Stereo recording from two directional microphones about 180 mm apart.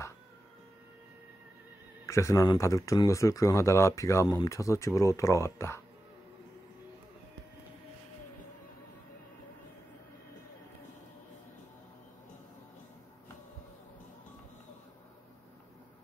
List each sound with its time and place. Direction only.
2.0 s speech: 15° left (ahead or behind)